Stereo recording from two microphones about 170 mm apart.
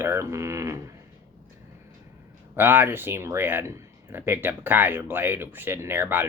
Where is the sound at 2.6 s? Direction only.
10° right (ahead or behind).